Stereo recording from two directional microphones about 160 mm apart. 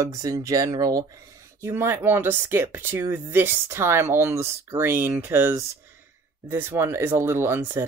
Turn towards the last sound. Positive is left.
turn(degrees=-15)  # may be behind; listen again after turning